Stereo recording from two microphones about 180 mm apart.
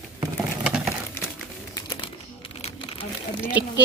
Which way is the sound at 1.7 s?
25° left (ahead or behind).